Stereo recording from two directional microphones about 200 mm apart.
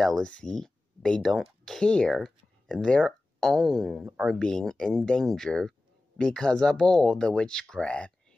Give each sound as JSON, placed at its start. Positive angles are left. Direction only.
{"t": 0.0, "sound": "speech", "side_deg": 5}